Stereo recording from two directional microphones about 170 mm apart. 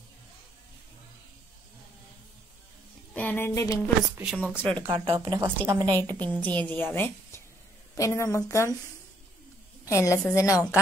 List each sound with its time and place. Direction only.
3.2 s speech: 10° left (ahead or behind)
4.2 s speech: 5° right (ahead or behind)
4.6 s a woman's voice: 10° left (ahead or behind)
4.8 s speech: 30° right (ahead or behind)
5.2 s a woman's voice: 20° right (ahead or behind)
6.2 s a woman's voice: 10° left (ahead or behind)
9.8 s a woman's voice: 15° left (ahead or behind)